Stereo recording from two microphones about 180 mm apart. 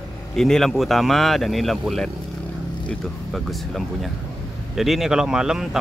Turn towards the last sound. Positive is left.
turn(degrees=0)  # may be behind; listen again after turning